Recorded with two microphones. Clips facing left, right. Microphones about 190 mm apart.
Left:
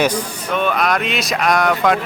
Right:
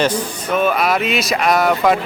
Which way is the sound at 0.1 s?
5° right (ahead or behind).